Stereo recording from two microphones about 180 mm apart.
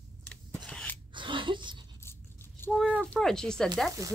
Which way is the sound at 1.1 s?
25° right (ahead or behind).